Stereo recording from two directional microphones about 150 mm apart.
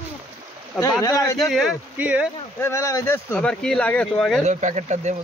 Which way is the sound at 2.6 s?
20° left (ahead or behind).